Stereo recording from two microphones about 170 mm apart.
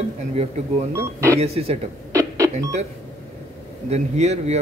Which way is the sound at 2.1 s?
20° right (ahead or behind).